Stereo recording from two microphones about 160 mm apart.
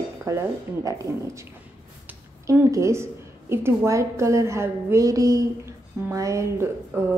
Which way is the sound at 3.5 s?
15° right (ahead or behind).